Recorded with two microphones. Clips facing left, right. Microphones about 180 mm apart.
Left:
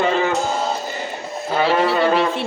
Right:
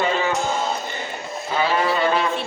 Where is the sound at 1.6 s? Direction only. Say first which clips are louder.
Left 3 dB; 65° left (ahead or behind).